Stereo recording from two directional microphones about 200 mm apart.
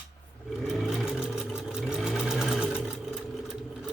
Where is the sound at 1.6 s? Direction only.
5° right (ahead or behind).